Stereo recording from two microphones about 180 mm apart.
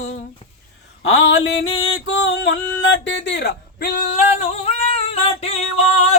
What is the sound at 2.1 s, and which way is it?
Speech, 85° left.